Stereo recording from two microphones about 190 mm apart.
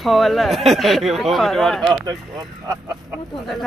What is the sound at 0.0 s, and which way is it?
Speech, centre (ahead or behind).